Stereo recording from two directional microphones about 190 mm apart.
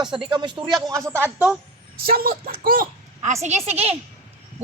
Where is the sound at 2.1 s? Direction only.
50° right (ahead or behind).